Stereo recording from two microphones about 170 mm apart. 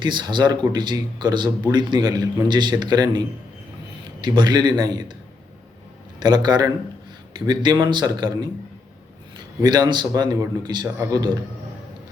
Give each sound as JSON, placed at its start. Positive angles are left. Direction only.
{"t": 0.0, "sound": "a man's voice", "side_deg": -25}
{"t": 6.1, "sound": "a man's voice", "side_deg": -25}
{"t": 9.6, "sound": "a man's voice", "side_deg": -25}